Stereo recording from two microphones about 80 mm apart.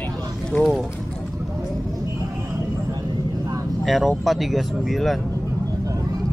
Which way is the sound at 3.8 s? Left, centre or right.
Centre.